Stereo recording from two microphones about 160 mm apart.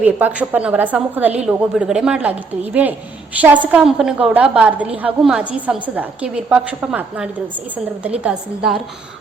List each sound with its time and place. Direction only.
0.0 s a woman's voice: 10° right (ahead or behind)
3.4 s a woman's voice: 10° right (ahead or behind)